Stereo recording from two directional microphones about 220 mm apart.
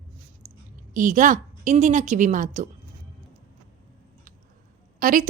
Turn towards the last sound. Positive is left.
turn(degrees=-40)  # may be behind; listen again after turning